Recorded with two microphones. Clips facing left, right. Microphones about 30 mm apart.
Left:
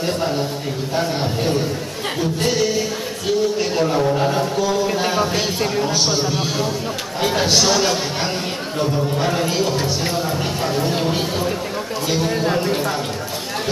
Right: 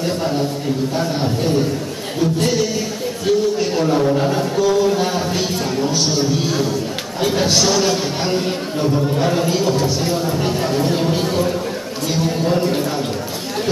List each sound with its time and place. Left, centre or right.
0.0 s a man's voice: centre
9.8 s speech: left
10.2 s a man's voice: centre